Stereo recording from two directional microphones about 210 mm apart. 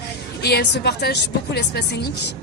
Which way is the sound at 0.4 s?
50° left (ahead or behind).